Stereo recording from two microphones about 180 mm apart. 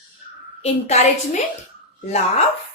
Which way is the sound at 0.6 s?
35° left (ahead or behind).